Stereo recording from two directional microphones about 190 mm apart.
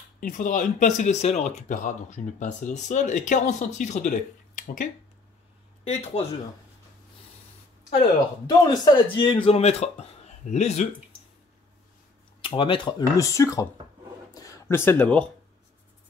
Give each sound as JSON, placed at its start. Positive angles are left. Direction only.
{"t": 0.2, "sound": "speech", "side_deg": 45}
{"t": 5.9, "sound": "speech", "side_deg": 35}
{"t": 8.0, "sound": "speech", "side_deg": 20}
{"t": 12.4, "sound": "speech", "side_deg": 25}
{"t": 14.3, "sound": "a sound", "side_deg": 15}